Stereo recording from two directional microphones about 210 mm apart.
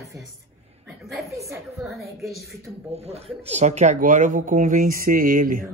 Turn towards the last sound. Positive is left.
turn(degrees=-40)  # may be behind; listen again after turning